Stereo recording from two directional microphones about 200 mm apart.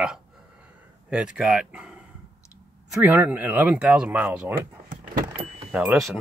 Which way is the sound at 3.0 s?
10° right (ahead or behind).